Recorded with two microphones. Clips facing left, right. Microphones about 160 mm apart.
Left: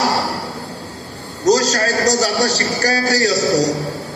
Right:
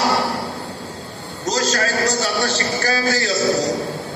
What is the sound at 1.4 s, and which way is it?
A man's voice, 40° left (ahead or behind).